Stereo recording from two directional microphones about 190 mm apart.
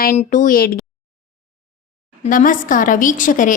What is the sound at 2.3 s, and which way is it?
A woman's voice, 45° left (ahead or behind).